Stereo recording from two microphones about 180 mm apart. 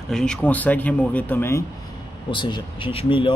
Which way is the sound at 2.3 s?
25° left (ahead or behind).